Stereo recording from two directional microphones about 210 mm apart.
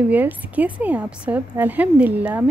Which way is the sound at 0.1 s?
10° right (ahead or behind).